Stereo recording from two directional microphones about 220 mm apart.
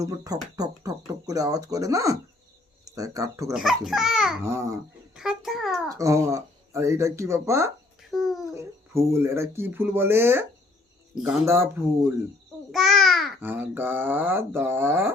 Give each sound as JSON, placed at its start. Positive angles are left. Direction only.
{"t": 0.5, "sound": "speech", "side_deg": -15}
{"t": 3.5, "sound": "a child's voice", "side_deg": 0}
{"t": 5.1, "sound": "a sound", "side_deg": 0}
{"t": 5.9, "sound": "speech", "side_deg": -15}
{"t": 8.1, "sound": "a sound", "side_deg": 0}
{"t": 8.5, "sound": "speech", "side_deg": -10}
{"t": 12.7, "sound": "a child's voice", "side_deg": 0}